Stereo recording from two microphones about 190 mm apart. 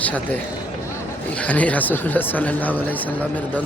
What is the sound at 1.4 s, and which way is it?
Speech, 10° left (ahead or behind).